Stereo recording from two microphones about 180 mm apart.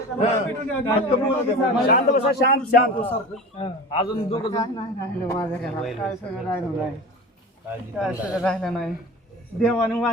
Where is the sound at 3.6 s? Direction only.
30° left (ahead or behind).